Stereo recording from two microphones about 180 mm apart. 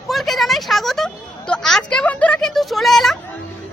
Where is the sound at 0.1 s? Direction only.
Centre (ahead or behind).